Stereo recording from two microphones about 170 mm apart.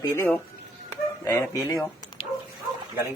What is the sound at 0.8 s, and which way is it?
Chicken, 20° left (ahead or behind).